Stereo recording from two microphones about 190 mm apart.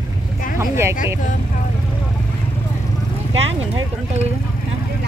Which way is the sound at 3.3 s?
30° right (ahead or behind).